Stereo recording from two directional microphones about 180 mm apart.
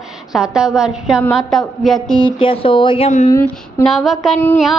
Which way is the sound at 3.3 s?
15° left (ahead or behind).